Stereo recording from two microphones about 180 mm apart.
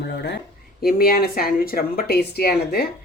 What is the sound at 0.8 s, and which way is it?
Speech, 55° left (ahead or behind).